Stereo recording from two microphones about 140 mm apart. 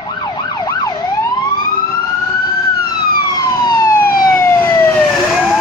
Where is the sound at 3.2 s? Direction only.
30° left (ahead or behind).